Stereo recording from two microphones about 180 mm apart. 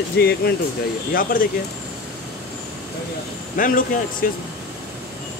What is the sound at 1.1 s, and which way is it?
Speech, 50° left (ahead or behind).